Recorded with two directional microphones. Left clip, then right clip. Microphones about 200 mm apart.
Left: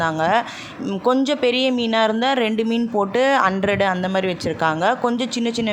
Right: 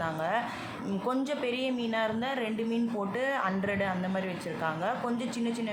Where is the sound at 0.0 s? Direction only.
40° left (ahead or behind).